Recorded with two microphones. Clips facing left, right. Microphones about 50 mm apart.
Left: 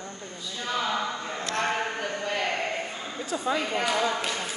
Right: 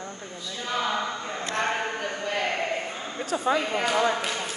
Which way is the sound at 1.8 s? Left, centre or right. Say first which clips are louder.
Even; centre.